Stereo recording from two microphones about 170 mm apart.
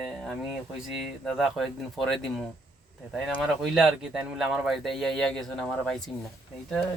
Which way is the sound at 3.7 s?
Centre (ahead or behind).